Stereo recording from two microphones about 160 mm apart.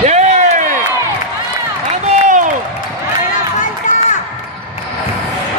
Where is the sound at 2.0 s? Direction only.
50° right (ahead or behind).